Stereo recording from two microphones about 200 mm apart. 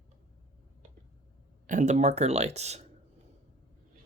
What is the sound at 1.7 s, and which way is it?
Speech, 35° right (ahead or behind).